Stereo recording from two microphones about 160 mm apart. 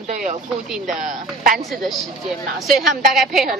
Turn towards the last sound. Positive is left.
turn(degrees=0)  # may be behind; listen again after turning